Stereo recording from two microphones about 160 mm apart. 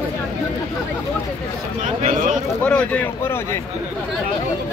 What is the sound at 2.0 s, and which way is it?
Speech, 55° right (ahead or behind).